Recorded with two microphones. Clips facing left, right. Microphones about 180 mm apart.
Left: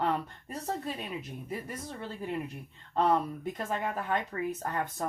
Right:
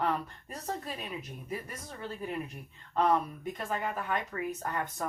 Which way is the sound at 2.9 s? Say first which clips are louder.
Left 1 dB; 30° left (ahead or behind).